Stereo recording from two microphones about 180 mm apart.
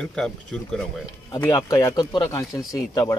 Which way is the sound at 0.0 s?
5° left (ahead or behind).